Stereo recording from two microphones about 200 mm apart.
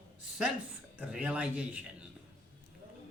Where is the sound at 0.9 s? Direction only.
5° right (ahead or behind).